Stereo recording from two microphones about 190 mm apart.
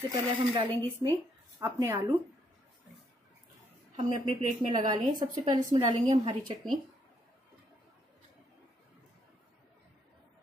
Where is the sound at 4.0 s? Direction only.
25° right (ahead or behind).